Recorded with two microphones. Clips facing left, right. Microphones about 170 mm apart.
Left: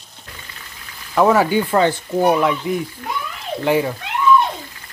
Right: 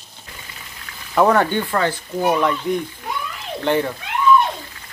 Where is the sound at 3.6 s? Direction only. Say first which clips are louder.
Left 2 dB; 5° left (ahead or behind).